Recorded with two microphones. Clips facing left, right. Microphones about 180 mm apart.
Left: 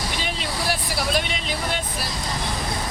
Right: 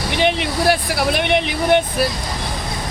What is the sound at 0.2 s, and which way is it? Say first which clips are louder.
Vehicle: right 10 dB; 70° right (ahead or behind).